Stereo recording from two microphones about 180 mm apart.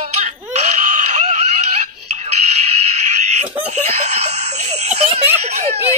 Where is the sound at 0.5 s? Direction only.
45° right (ahead or behind).